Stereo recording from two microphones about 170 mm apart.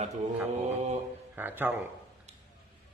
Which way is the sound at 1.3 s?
10° right (ahead or behind).